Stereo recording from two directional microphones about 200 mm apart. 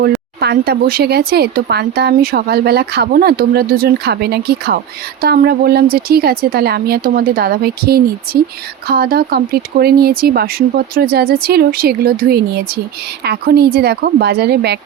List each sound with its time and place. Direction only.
0.3 s speech: 55° right (ahead or behind)